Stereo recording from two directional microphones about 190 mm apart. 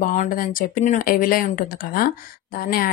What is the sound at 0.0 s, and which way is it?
Speech, 45° left (ahead or behind).